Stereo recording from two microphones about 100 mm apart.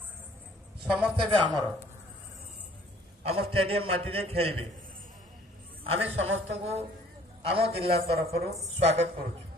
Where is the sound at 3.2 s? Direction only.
80° right.